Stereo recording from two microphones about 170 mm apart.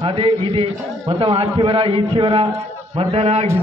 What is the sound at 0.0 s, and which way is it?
A man's voice, 30° right (ahead or behind).